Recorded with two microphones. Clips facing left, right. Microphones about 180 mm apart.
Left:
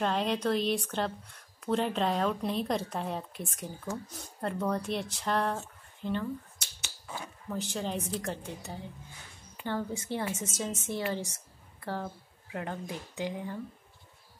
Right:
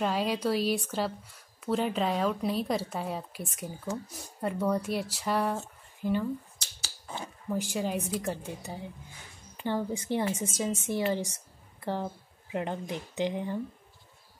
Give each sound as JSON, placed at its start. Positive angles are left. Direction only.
{"t": 0.0, "sound": "speech", "side_deg": -5}
{"t": 6.8, "sound": "a sound", "side_deg": -30}
{"t": 7.4, "sound": "speech", "side_deg": -10}